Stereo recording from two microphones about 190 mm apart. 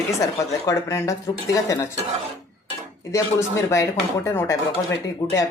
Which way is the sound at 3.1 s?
15° left (ahead or behind).